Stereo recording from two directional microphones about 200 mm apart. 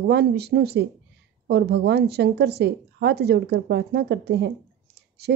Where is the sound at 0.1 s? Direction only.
55° right (ahead or behind).